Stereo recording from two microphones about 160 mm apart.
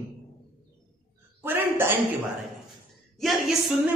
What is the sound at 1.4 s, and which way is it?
Speech, 10° right (ahead or behind).